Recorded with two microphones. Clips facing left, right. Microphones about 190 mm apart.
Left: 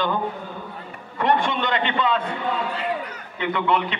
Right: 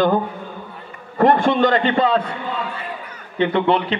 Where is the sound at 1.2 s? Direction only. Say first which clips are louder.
Right 7 dB; 40° right (ahead or behind).